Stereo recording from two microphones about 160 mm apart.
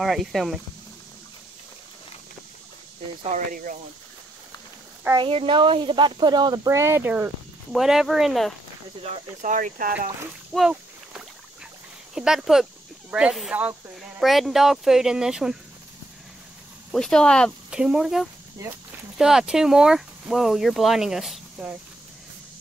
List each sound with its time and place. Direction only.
0.0 s speech: centre (ahead or behind)
3.3 s speech: 55° right (ahead or behind)
5.1 s speech: 35° right (ahead or behind); by 7.2 s 15° right (ahead or behind)
7.7 s speech: centre (ahead or behind)
9.0 s speech: 45° right (ahead or behind)
10.5 s a sound: 5° right (ahead or behind)
12.1 s speech: 5° right (ahead or behind)
16.9 s speech: 5° left (ahead or behind)